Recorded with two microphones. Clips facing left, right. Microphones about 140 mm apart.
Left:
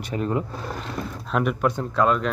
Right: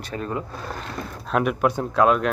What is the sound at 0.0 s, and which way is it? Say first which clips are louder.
Speech: left 3 dB; 20° left (ahead or behind).